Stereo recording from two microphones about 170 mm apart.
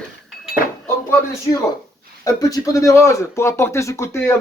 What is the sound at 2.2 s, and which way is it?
Speech, 20° left (ahead or behind).